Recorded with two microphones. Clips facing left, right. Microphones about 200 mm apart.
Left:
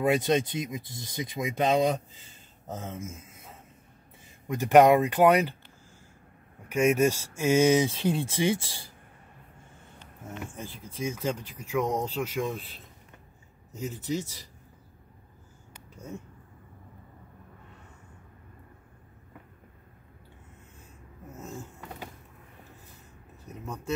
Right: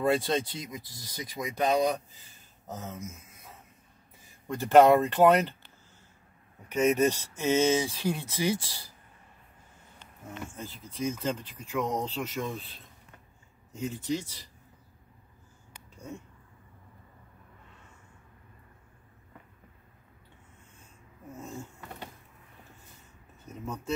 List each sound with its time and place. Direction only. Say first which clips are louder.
0.0 s speech: left 2 dB; 15° left (ahead or behind)
4.5 s speech: left 1 dB; 15° left (ahead or behind)
6.7 s speech: left 1 dB; 10° left (ahead or behind)
10.5 s speech: left 1 dB; 15° left (ahead or behind)
13.7 s speech: even; 5° left (ahead or behind)